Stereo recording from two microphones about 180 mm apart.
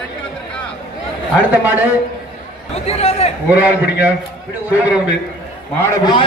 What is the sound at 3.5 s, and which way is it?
A man's voice, 10° right (ahead or behind).